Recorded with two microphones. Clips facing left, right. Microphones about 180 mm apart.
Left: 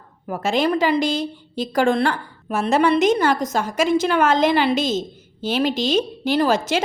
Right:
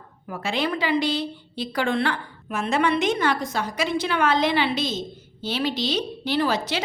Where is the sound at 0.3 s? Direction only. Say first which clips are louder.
Left 6 dB; 45° left (ahead or behind).